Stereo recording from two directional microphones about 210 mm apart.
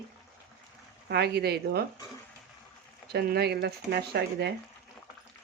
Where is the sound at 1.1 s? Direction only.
50° right (ahead or behind).